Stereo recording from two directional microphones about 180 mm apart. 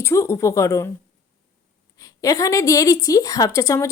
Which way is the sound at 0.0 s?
15° left (ahead or behind).